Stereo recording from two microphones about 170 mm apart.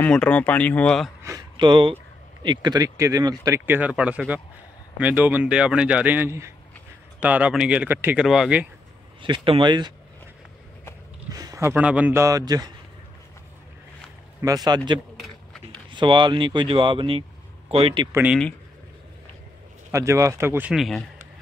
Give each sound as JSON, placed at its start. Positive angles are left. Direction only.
{"t": 0.0, "sound": "speech", "side_deg": 5}
{"t": 1.2, "sound": "a man's voice", "side_deg": -25}
{"t": 9.2, "sound": "speech", "side_deg": -30}
{"t": 11.3, "sound": "a man's voice", "side_deg": -20}
{"t": 14.4, "sound": "speech", "side_deg": -20}
{"t": 15.9, "sound": "a man's voice", "side_deg": -25}
{"t": 18.1, "sound": "a man's voice", "side_deg": -10}
{"t": 19.9, "sound": "a man's voice", "side_deg": -15}
{"t": 20.7, "sound": "speech", "side_deg": 0}